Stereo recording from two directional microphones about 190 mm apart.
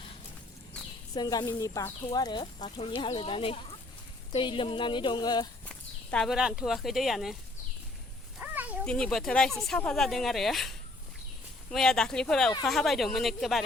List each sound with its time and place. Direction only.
1.1 s speech: 20° left (ahead or behind)
5.6 s speech: 5° left (ahead or behind)
8.4 s a sound: 10° right (ahead or behind)
8.8 s speech: 5° left (ahead or behind)